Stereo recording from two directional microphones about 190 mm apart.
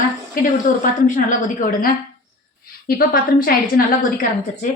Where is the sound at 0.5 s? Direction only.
40° left (ahead or behind).